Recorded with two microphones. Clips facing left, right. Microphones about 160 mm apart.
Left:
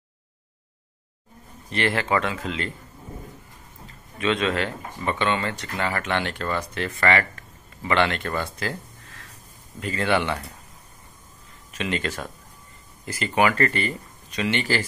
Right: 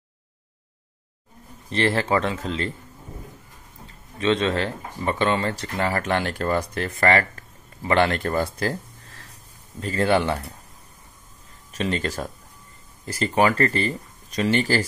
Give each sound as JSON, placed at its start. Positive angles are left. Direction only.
{"t": 1.7, "sound": "speech", "side_deg": -30}
{"t": 4.2, "sound": "speech", "side_deg": -30}
{"t": 11.7, "sound": "speech", "side_deg": -35}